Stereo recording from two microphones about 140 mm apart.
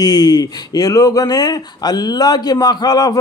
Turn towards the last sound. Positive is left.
turn(degrees=25)  # may be behind; listen again after turning